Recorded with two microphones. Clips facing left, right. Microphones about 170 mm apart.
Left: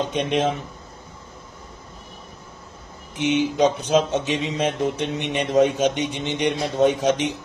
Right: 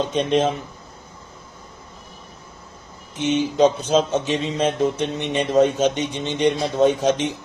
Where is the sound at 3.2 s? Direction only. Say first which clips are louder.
Right 2 dB; 15° left (ahead or behind).